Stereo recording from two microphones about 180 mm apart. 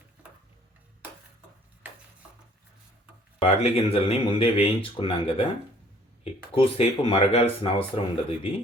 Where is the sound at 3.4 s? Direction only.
30° left (ahead or behind).